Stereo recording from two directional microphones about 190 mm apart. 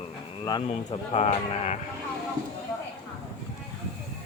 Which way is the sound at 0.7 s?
35° left (ahead or behind).